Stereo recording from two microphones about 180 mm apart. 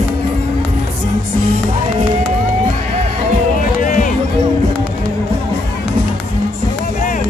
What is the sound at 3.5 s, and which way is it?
Music, 50° left (ahead or behind).